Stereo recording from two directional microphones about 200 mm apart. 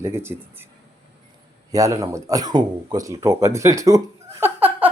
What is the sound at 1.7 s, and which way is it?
Speech, 15° right (ahead or behind).